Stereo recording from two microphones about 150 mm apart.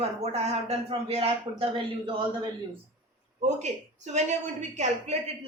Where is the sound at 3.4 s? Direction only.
50° right (ahead or behind).